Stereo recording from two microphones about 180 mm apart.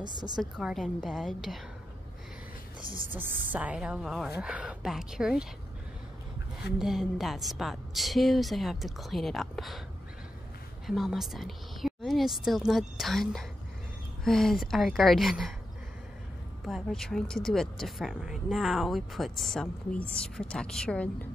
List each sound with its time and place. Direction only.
0.0 s a woman's voice: 25° right (ahead or behind)
0.4 s speech: centre (ahead or behind)
2.8 s speech: 50° right (ahead or behind)
3.1 s a woman's voice: 10° right (ahead or behind)
6.8 s speech: centre (ahead or behind)
10.9 s speech: centre (ahead or behind)
16.6 s speech: centre (ahead or behind)